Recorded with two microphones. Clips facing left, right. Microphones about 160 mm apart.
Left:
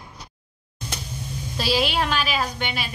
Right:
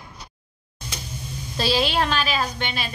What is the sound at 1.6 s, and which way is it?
A woman's voice, 10° left (ahead or behind).